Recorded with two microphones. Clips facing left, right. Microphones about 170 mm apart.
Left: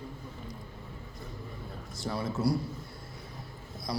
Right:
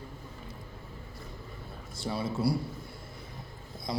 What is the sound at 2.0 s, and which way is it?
Speech, 25° right (ahead or behind).